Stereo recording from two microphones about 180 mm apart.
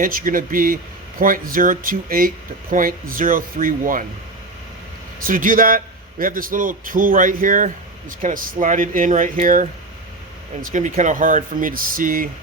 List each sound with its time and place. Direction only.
0.0 s speech: 50° right (ahead or behind)
5.2 s speech: 50° right (ahead or behind)